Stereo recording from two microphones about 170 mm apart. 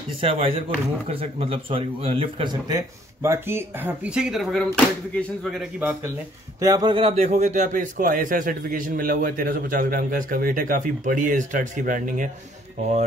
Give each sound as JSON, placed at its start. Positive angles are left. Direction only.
{"t": 0.2, "sound": "speech", "side_deg": -35}
{"t": 2.7, "sound": "speech", "side_deg": -15}
{"t": 6.6, "sound": "a man's voice", "side_deg": -20}